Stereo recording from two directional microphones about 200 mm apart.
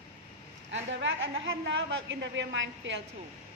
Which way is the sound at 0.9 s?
70° right (ahead or behind).